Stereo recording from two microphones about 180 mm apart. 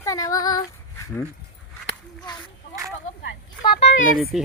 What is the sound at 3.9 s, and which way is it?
Speech, 85° left.